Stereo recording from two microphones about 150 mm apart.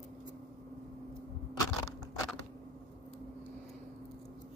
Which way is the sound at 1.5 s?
25° left (ahead or behind).